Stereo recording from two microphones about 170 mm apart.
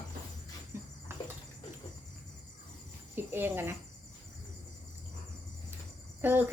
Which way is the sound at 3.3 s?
15° right (ahead or behind).